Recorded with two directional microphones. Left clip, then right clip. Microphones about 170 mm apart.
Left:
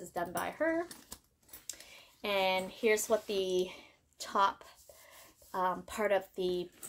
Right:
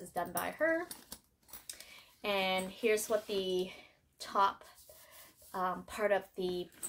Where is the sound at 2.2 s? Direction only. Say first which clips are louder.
Left 2 dB; 40° left (ahead or behind).